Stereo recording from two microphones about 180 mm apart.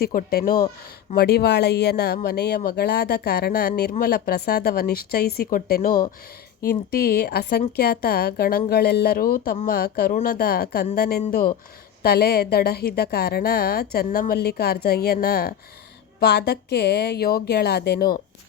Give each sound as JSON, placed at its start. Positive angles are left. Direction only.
{"t": 0.0, "sound": "speech", "side_deg": 55}